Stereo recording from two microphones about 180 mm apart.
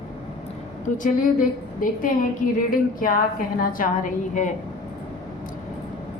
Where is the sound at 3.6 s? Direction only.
50° left (ahead or behind).